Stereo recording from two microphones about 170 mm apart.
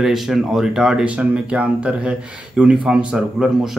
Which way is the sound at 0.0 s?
Centre (ahead or behind).